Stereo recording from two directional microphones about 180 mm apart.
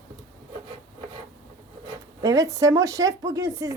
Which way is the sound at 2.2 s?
20° right (ahead or behind).